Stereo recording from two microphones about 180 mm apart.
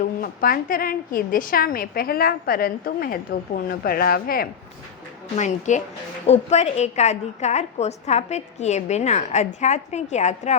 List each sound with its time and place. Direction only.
0.2 s a woman's voice: 50° left (ahead or behind)
5.4 s a woman's voice: 40° left (ahead or behind)